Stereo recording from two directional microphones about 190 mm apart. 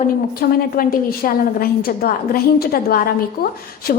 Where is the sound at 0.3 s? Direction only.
50° left (ahead or behind).